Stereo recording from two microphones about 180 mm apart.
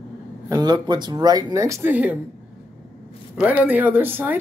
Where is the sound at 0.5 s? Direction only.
20° right (ahead or behind).